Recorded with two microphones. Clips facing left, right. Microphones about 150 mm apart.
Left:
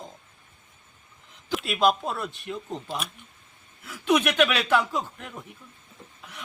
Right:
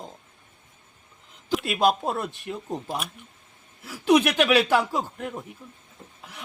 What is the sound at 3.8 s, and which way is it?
Speech, 35° right (ahead or behind).